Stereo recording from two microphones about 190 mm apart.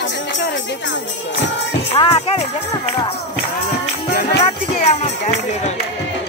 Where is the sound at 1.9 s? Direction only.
30° left (ahead or behind).